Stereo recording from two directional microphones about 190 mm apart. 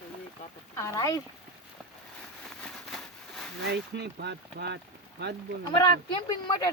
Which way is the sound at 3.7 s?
60° right (ahead or behind).